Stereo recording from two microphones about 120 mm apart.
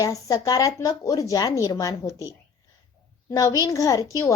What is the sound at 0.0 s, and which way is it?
Speech, 30° left (ahead or behind).